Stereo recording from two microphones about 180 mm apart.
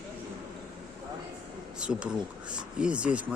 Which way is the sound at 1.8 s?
5° right (ahead or behind).